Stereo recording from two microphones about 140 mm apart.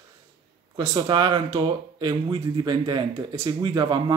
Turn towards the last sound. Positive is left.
turn(degrees=-30)  # may be behind; listen again after turning